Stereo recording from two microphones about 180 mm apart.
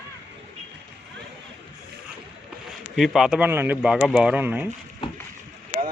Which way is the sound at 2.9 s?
Centre (ahead or behind).